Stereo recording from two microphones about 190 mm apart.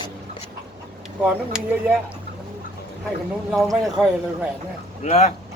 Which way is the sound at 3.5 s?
Centre (ahead or behind).